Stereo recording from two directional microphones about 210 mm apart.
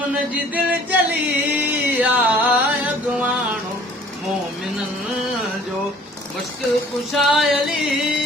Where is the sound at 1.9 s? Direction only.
10° right (ahead or behind).